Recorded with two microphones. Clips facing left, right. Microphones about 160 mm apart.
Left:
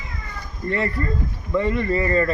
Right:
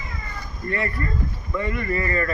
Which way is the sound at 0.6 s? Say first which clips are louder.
Left 3 dB; 25° left (ahead or behind).